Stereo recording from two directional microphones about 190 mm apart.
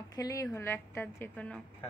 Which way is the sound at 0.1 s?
20° left (ahead or behind).